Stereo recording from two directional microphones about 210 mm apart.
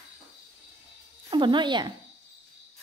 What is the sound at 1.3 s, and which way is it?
Speech, 20° right (ahead or behind).